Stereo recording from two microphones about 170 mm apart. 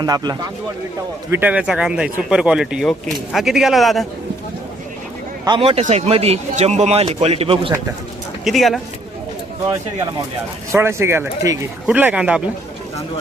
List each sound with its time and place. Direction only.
0.0 s speech: 25° right (ahead or behind)
1.3 s speech: 10° right (ahead or behind)
5.5 s a man's voice: 30° right (ahead or behind)
8.4 s speech: centre (ahead or behind)
10.7 s speech: 15° right (ahead or behind)